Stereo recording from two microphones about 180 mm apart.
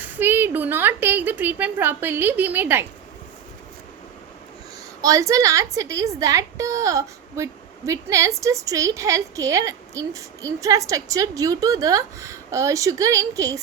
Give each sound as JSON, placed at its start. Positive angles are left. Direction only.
{"t": 0.0, "sound": "a woman's voice", "side_deg": -10}
{"t": 4.9, "sound": "a woman's voice", "side_deg": -20}